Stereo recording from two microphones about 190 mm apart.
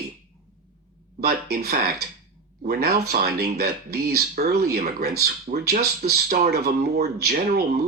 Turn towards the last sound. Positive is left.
turn(degrees=-55)  # may be behind; listen again after turning